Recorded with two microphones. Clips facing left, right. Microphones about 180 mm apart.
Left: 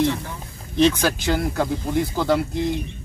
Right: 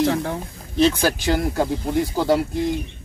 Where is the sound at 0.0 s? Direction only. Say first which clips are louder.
Right 2 dB; 60° right (ahead or behind).